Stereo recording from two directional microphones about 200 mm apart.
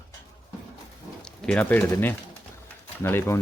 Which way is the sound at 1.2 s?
5° left (ahead or behind).